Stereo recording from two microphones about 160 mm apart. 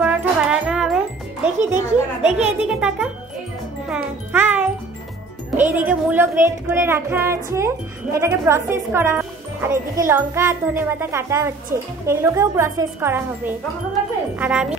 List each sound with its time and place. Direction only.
0.0 s music: 10° right (ahead or behind)
2.4 s speech: 10° right (ahead or behind)